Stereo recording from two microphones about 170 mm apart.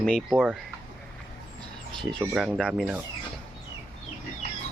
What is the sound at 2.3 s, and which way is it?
Speech, 5° right (ahead or behind).